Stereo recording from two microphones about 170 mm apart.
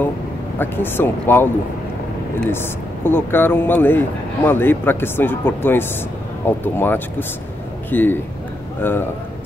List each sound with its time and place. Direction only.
0.6 s speech: 10° left (ahead or behind)
2.5 s speech: 15° left (ahead or behind)